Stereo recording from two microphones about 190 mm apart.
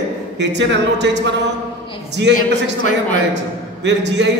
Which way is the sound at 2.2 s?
75° right (ahead or behind).